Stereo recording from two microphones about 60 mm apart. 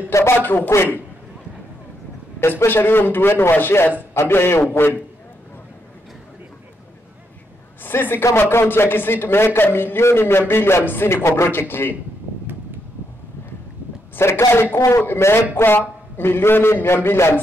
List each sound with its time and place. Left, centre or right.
0.4 s a man's voice: left
2.4 s a man's voice: left
7.8 s a woman's voice: left
14.1 s a man's voice: left